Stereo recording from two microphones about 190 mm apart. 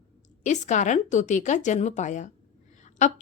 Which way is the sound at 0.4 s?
40° left (ahead or behind).